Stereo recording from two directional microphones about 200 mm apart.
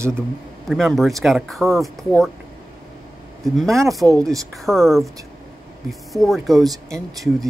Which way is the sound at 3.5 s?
Centre (ahead or behind).